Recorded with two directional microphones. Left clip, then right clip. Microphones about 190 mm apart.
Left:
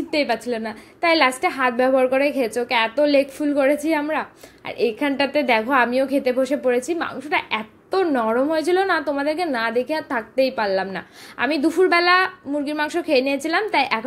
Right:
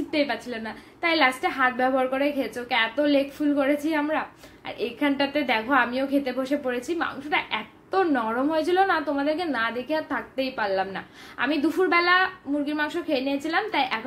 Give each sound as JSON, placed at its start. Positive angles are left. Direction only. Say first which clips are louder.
{"t": 0.1, "sound": "a woman's voice", "louder": "left 6 dB", "side_deg": 40}